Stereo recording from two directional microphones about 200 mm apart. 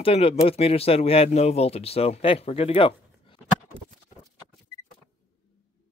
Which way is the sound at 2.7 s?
25° left (ahead or behind).